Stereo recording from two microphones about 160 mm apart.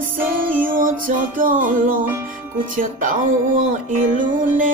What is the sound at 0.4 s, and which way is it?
Music, 60° right (ahead or behind).